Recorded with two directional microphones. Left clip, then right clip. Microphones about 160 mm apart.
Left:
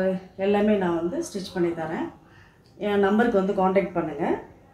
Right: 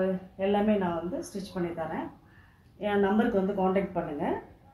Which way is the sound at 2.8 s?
20° left (ahead or behind).